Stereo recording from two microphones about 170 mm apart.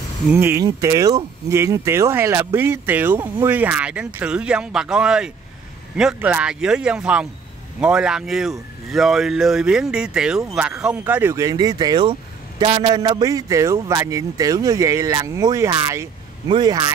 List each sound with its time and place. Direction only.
0.3 s speech: 15° right (ahead or behind)